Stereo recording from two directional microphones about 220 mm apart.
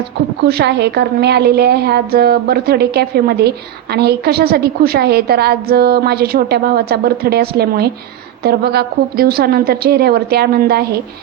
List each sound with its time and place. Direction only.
0.4 s a woman's voice: 50° right (ahead or behind)